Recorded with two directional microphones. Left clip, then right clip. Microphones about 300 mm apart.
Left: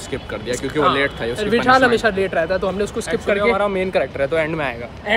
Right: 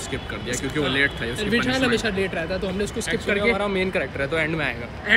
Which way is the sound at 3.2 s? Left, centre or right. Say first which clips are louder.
Left 5 dB; centre.